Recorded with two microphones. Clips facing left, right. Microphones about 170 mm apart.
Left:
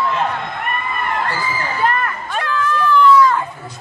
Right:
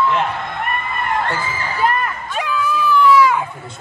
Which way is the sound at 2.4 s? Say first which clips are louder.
Even; 10° right (ahead or behind).